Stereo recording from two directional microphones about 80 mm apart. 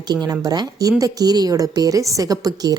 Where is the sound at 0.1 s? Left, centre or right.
Right.